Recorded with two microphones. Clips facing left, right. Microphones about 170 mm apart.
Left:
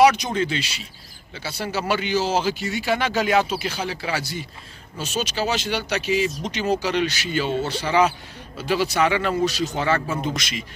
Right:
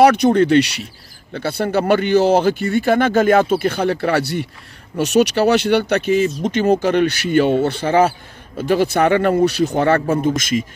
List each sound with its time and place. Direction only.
0.0 s speech: 60° right (ahead or behind)